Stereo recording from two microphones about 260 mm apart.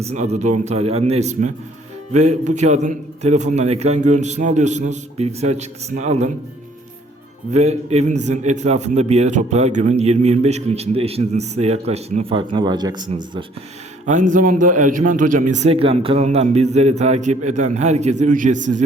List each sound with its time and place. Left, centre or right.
0.0 s a man's voice: right
7.5 s a man's voice: right
14.0 s a man's voice: right